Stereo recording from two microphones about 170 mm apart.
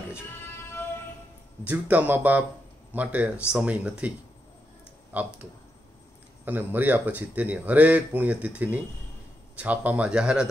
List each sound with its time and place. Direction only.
0.4 s music: 15° left (ahead or behind)
1.6 s speech: 10° right (ahead or behind)
5.1 s speech: 10° right (ahead or behind)
6.4 s speech: 10° right (ahead or behind)